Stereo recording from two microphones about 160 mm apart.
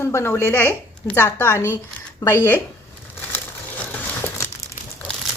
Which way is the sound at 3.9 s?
10° left (ahead or behind).